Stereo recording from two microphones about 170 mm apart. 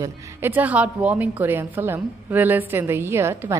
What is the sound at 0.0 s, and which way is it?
A woman's voice, 10° right (ahead or behind).